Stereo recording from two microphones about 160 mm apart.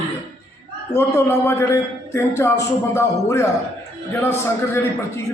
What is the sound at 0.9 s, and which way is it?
A man's voice, 15° left (ahead or behind).